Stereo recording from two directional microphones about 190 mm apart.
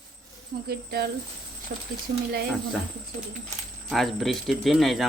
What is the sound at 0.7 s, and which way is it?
Speech, 55° right (ahead or behind).